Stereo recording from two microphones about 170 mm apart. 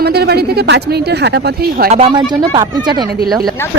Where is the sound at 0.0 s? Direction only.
70° right (ahead or behind).